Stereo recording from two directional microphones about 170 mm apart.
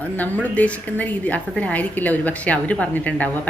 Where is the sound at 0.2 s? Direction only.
10° left (ahead or behind).